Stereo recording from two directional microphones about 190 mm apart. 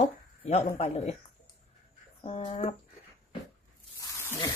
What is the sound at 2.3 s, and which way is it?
Speech, 35° left (ahead or behind).